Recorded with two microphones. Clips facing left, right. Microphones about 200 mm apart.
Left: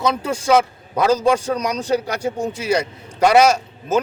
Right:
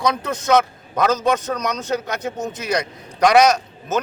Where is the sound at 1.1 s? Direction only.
30° left (ahead or behind).